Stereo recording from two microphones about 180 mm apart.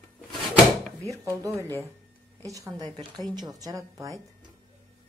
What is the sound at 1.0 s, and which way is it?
A woman's voice, 15° right (ahead or behind).